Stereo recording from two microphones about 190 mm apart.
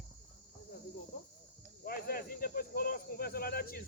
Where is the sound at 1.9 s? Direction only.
50° left (ahead or behind).